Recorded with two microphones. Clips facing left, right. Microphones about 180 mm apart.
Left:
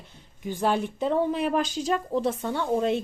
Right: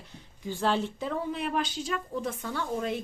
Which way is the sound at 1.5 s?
40° left (ahead or behind).